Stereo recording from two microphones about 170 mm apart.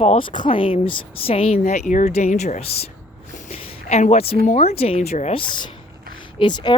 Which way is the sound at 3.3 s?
40° left (ahead or behind).